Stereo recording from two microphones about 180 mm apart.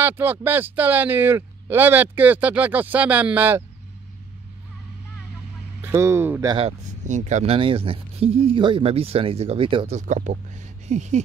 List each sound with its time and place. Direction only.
0.0 s speech: 10° right (ahead or behind)
5.8 s speech: 15° right (ahead or behind)
7.1 s speech: 40° right (ahead or behind)
9.9 s speech: 45° right (ahead or behind)